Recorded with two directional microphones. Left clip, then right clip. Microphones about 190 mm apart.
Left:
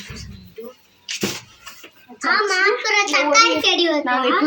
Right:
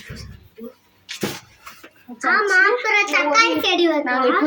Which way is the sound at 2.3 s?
50° right (ahead or behind).